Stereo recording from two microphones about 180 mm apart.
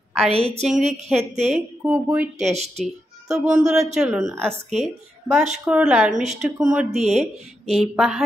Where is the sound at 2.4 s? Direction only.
35° right (ahead or behind).